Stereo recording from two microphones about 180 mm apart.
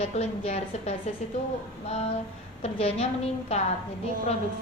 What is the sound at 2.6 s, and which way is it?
Speech, 35° left (ahead or behind).